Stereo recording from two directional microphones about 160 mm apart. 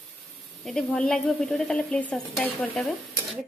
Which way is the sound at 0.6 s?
Centre (ahead or behind).